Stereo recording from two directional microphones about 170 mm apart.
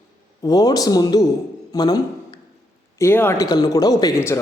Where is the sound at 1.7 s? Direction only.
20° left (ahead or behind).